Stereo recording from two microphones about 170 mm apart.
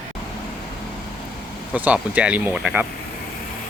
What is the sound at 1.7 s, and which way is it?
Speech, 10° right (ahead or behind).